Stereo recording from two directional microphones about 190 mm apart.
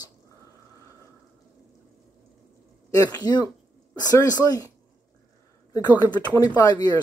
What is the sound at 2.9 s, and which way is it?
Speech, 20° left (ahead or behind).